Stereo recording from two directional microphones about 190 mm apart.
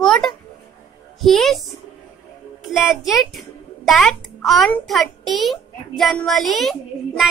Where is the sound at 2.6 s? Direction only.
5° right (ahead or behind).